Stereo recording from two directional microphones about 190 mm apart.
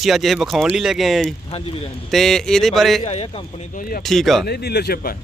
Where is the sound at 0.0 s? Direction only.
Centre (ahead or behind).